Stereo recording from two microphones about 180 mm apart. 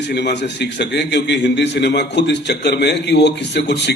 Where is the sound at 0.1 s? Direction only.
70° left (ahead or behind).